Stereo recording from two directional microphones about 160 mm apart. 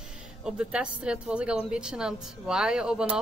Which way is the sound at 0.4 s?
5° right (ahead or behind).